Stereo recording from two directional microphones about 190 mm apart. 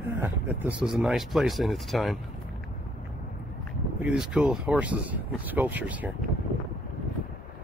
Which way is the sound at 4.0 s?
5° right (ahead or behind).